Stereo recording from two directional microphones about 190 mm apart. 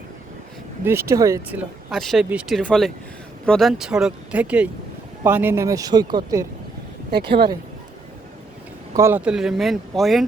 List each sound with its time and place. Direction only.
0.9 s speech: 15° right (ahead or behind)
7.1 s speech: 55° right (ahead or behind)
9.0 s speech: 10° right (ahead or behind)